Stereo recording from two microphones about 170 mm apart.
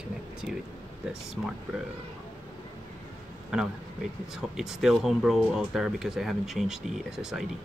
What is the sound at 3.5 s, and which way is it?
Speech, 5° right (ahead or behind).